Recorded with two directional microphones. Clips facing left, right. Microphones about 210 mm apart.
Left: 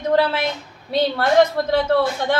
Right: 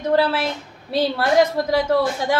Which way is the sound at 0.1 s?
5° right (ahead or behind).